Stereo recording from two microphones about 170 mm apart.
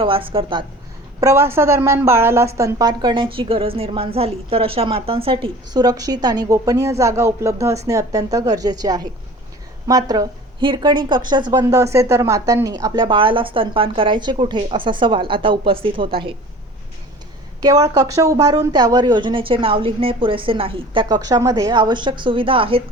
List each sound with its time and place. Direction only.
0.0 s a woman's voice: 30° right (ahead or behind)
1.2 s a woman's voice: 15° right (ahead or behind)
17.6 s a woman's voice: 20° right (ahead or behind)